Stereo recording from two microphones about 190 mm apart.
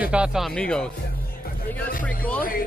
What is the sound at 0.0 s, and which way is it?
A man's voice, 5° right (ahead or behind).